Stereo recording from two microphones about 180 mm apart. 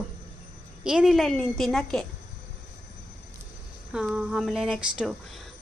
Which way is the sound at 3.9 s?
5° right (ahead or behind).